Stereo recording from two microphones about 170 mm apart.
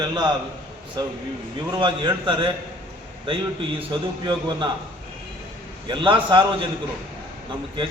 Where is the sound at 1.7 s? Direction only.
25° right (ahead or behind).